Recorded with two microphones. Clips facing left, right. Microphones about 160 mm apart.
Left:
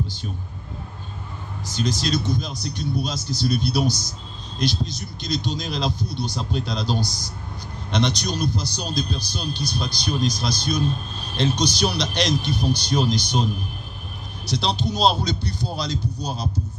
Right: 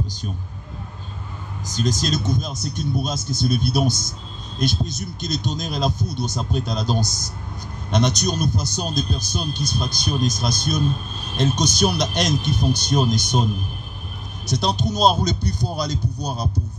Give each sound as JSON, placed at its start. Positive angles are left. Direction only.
{"t": 0.0, "sound": "speech", "side_deg": -45}
{"t": 1.7, "sound": "a man's voice", "side_deg": -45}
{"t": 14.5, "sound": "a man's voice", "side_deg": -45}
{"t": 15.9, "sound": "speech", "side_deg": -15}